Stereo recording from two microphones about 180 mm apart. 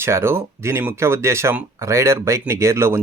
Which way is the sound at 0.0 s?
15° right (ahead or behind).